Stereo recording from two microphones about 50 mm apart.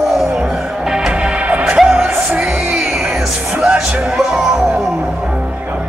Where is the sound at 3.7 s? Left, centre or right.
Centre.